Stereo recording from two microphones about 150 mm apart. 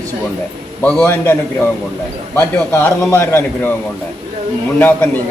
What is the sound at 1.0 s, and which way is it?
A man's voice, 15° left (ahead or behind).